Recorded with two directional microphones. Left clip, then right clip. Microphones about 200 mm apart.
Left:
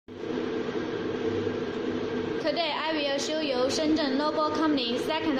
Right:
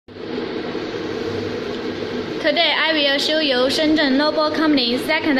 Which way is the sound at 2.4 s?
35° right (ahead or behind).